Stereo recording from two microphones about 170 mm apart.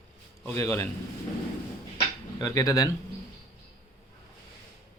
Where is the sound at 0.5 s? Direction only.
15° left (ahead or behind).